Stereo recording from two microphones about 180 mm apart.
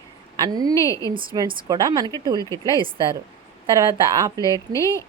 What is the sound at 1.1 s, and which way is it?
Speech, 25° right (ahead or behind).